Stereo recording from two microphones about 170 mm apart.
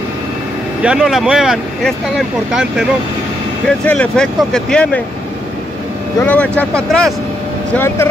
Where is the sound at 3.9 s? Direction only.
5° left (ahead or behind).